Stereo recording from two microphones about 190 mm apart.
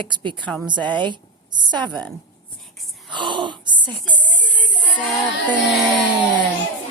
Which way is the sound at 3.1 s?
25° right (ahead or behind).